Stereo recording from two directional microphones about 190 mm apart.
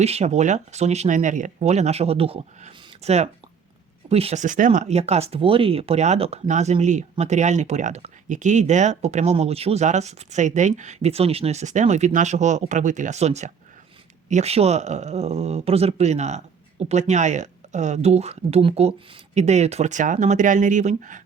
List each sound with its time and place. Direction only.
0.0 s speech: 35° right (ahead or behind)